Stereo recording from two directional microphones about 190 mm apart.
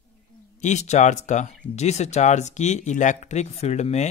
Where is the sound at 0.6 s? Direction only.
40° left (ahead or behind).